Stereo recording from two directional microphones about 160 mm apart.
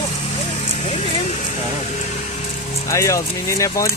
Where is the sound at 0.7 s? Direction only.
45° left (ahead or behind).